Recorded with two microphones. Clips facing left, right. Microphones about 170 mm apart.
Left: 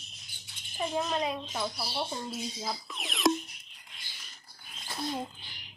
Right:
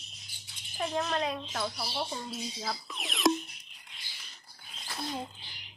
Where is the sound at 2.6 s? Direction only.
Centre (ahead or behind).